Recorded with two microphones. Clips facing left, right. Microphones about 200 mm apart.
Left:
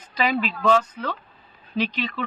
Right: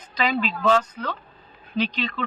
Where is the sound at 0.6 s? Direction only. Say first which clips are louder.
Left 1 dB; 5° left (ahead or behind).